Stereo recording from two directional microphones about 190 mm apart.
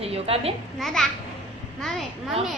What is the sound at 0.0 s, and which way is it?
Speech, 30° right (ahead or behind).